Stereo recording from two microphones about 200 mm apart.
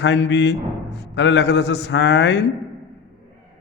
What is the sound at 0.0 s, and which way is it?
A man's voice, 65° left (ahead or behind).